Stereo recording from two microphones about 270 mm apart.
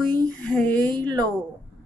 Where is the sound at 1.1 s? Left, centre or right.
Centre.